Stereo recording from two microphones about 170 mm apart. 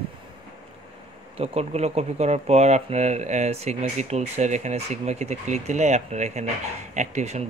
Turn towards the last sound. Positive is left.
turn(degrees=-40)  # may be behind; listen again after turning